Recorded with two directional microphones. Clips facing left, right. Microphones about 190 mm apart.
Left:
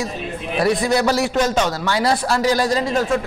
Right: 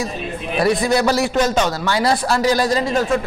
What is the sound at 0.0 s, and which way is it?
Chatter, 15° right (ahead or behind).